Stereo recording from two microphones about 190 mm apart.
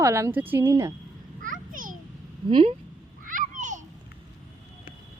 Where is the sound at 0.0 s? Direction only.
15° right (ahead or behind).